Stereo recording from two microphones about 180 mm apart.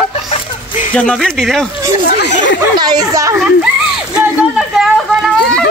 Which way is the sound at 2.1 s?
70° left (ahead or behind).